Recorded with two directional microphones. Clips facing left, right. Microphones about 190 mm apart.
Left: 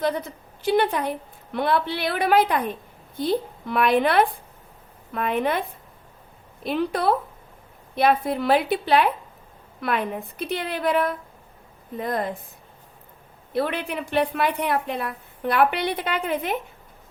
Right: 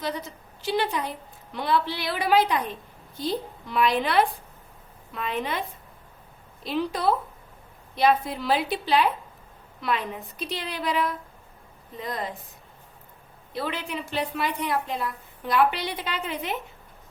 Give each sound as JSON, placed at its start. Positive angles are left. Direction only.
{"t": 0.0, "sound": "a woman's voice", "side_deg": 55}
{"t": 6.7, "sound": "a woman's voice", "side_deg": 55}
{"t": 13.5, "sound": "a woman's voice", "side_deg": 55}